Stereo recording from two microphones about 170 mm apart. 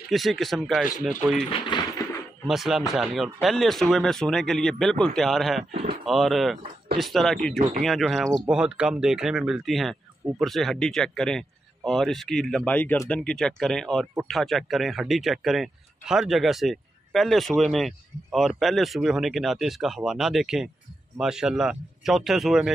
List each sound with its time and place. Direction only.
0.1 s speech: centre (ahead or behind)
1.5 s speech: 25° left (ahead or behind)
2.4 s speech: centre (ahead or behind)